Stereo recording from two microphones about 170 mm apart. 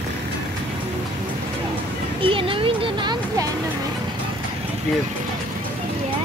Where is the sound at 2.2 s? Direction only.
30° right (ahead or behind).